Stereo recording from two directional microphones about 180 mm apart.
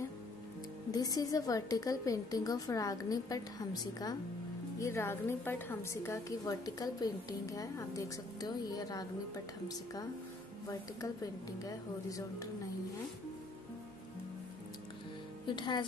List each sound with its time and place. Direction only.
0.9 s a woman's voice: 20° left (ahead or behind)
11.6 s a woman's voice: 20° left (ahead or behind)
15.4 s speech: 25° left (ahead or behind)